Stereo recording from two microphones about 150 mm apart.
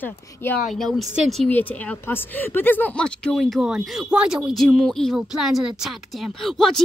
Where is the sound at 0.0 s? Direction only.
10° left (ahead or behind).